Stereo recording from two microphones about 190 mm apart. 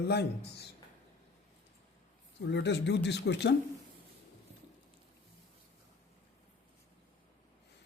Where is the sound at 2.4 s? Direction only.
65° left (ahead or behind).